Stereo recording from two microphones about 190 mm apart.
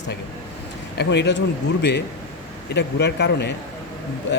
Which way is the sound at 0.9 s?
60° left (ahead or behind).